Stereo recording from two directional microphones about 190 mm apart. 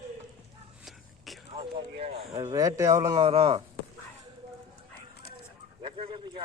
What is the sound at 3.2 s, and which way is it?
Speech, 30° right (ahead or behind).